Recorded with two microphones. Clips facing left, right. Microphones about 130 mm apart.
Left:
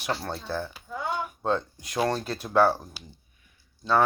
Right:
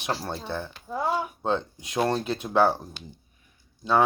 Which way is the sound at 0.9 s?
35° right (ahead or behind).